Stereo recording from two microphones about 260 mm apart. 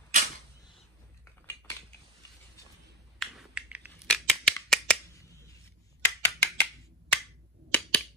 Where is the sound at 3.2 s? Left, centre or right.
Centre.